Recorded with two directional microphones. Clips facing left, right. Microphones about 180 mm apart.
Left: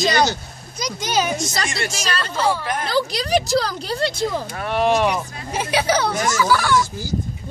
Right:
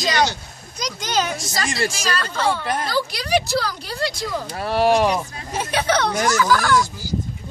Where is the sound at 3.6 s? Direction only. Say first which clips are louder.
Left 3 dB; 25° left (ahead or behind).